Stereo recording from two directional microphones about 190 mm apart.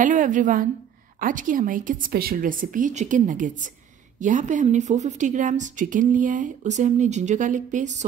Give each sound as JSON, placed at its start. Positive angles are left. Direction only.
{"t": 0.0, "sound": "a woman's voice", "side_deg": -45}